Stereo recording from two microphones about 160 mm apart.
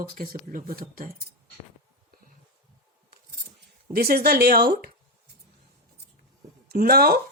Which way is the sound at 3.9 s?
70° right (ahead or behind).